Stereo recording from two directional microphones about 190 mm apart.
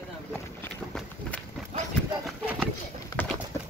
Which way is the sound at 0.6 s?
10° left (ahead or behind).